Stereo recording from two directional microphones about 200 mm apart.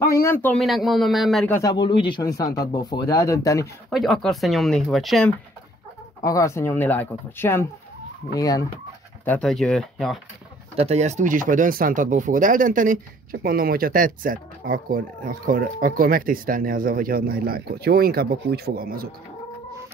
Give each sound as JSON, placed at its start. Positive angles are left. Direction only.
{"t": 0.0, "sound": "a man's voice", "side_deg": 15}
{"t": 1.5, "sound": "speech", "side_deg": 20}
{"t": 3.9, "sound": "a man's voice", "side_deg": 0}
{"t": 6.2, "sound": "speech", "side_deg": 15}
{"t": 9.2, "sound": "a man's voice", "side_deg": 5}
{"t": 10.8, "sound": "speech", "side_deg": -35}